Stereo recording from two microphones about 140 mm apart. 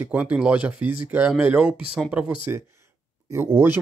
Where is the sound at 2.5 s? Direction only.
15° right (ahead or behind).